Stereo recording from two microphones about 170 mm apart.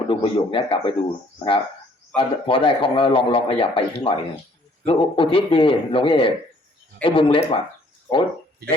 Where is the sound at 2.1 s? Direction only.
30° left (ahead or behind).